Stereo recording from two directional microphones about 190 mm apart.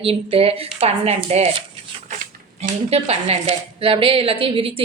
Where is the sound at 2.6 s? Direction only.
35° right (ahead or behind).